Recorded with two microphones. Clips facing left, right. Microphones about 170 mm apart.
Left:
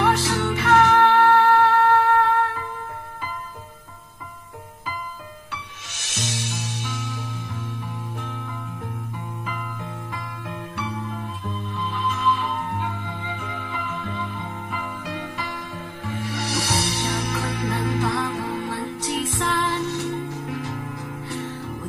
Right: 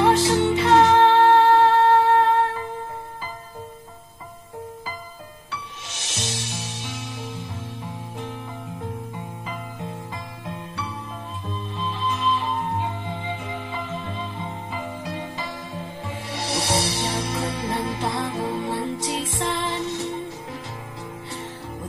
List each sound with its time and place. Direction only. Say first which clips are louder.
0.0 s music: right 4 dB; 20° right (ahead or behind)
11.9 s music: left 1 dB; 25° right (ahead or behind)